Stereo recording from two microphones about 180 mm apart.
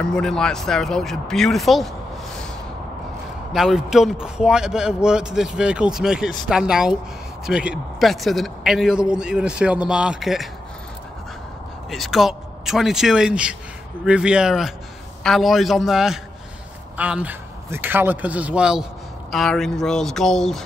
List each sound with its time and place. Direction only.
0.0 s speech: 5° left (ahead or behind)
3.5 s speech: centre (ahead or behind)
11.9 s speech: centre (ahead or behind)